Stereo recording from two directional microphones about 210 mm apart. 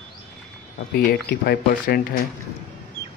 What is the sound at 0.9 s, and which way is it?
Speech, 50° left (ahead or behind).